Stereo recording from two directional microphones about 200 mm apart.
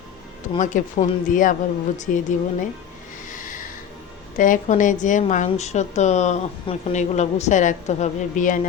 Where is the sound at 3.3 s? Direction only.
40° left (ahead or behind).